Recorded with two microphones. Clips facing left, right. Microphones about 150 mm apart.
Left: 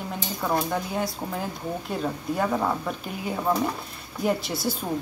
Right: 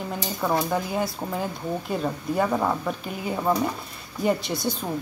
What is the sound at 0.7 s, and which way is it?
Speech, centre (ahead or behind).